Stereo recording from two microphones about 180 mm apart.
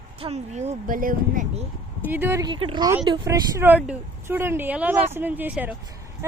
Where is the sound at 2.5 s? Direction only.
30° right (ahead or behind).